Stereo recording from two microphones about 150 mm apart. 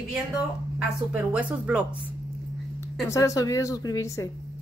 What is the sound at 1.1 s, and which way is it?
Speech, 10° right (ahead or behind).